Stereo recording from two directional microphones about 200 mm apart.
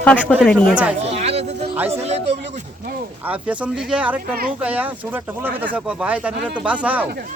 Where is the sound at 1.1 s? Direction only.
30° right (ahead or behind).